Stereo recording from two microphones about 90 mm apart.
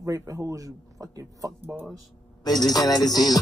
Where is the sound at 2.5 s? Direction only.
45° left (ahead or behind).